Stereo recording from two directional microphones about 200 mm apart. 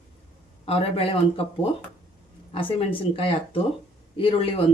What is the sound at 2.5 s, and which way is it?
Speech, 25° left (ahead or behind).